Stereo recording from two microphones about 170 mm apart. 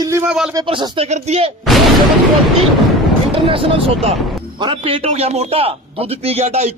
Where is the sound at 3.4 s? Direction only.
30° right (ahead or behind).